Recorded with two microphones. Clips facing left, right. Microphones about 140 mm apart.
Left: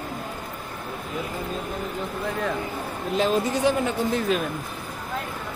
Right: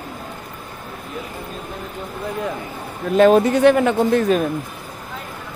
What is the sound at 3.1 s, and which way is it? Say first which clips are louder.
Speech: right 10 dB; 60° right (ahead or behind).